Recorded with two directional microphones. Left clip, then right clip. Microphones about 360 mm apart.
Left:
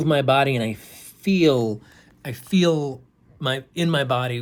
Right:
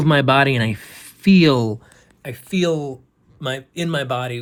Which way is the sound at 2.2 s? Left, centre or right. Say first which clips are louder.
Even; centre.